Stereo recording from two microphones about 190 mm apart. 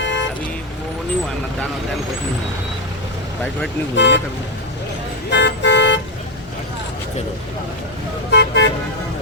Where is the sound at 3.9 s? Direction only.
70° left (ahead or behind).